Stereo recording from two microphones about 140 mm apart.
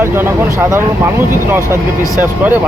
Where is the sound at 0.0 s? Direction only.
15° right (ahead or behind).